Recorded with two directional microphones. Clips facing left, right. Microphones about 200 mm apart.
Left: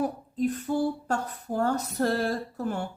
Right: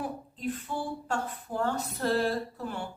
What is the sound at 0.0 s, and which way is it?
A woman's voice, 40° left (ahead or behind).